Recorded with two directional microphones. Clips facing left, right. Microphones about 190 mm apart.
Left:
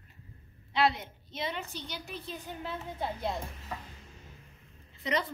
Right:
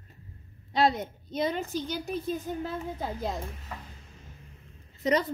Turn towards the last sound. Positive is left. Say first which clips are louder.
# right 6 dB
turn(degrees=-40)  # may be behind; listen again after turning